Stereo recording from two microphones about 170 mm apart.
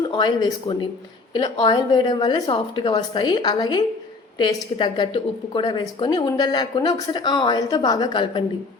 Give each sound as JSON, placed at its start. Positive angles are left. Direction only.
{"t": 0.1, "sound": "a woman's voice", "side_deg": 25}